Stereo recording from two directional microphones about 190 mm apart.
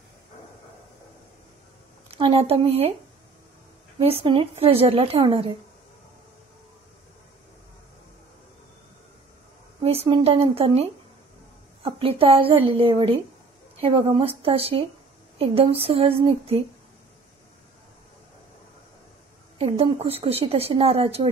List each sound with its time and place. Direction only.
2.0 s a woman's voice: 30° right (ahead or behind)
4.0 s a woman's voice: 30° right (ahead or behind)
9.8 s a woman's voice: 30° right (ahead or behind)
19.6 s a woman's voice: 30° right (ahead or behind)